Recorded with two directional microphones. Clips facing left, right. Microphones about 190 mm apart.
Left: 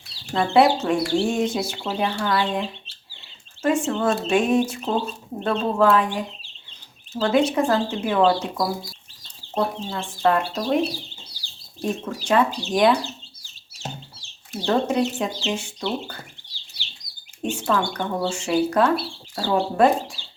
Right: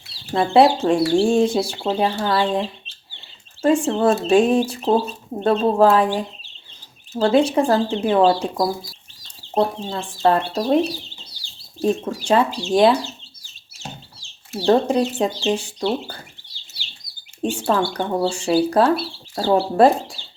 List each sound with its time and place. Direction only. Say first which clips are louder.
0.3 s speech: right 3 dB; 30° right (ahead or behind)
11.8 s speech: right 6 dB; 30° right (ahead or behind)
14.7 s speech: right 4 dB; 35° right (ahead or behind)
17.4 s speech: right 3 dB; 35° right (ahead or behind)